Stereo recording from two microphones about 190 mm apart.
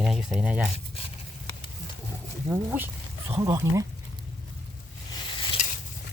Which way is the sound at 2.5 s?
10° right (ahead or behind).